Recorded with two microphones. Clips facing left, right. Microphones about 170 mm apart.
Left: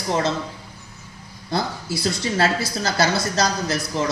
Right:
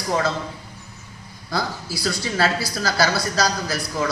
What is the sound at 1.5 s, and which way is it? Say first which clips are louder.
A woman's voice: left 2 dB; 20° left (ahead or behind).